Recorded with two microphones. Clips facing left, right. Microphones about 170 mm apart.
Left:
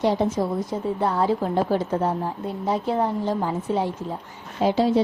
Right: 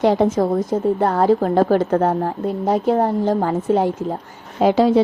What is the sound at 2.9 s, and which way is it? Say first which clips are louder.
Speech: right 7 dB; 45° right (ahead or behind).